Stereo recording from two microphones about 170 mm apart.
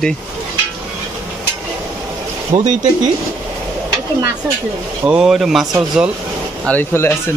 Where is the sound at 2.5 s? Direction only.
30° right (ahead or behind).